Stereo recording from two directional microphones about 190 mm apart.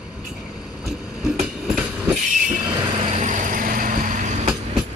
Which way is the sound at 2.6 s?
30° right (ahead or behind).